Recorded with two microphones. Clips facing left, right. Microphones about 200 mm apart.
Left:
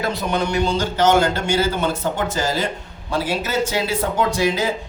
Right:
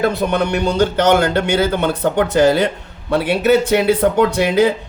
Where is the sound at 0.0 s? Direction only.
55° right (ahead or behind).